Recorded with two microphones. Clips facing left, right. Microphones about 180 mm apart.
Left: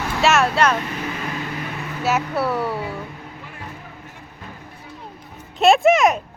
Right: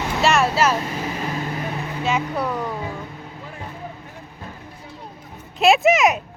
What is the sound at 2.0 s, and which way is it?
Speech, 5° left (ahead or behind).